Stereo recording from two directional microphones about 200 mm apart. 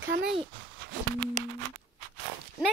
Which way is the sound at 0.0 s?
60° right (ahead or behind).